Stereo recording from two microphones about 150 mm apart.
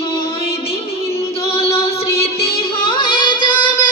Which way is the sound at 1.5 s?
40° left (ahead or behind).